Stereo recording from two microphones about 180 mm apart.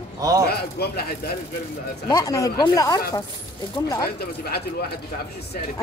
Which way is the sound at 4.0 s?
60° left (ahead or behind).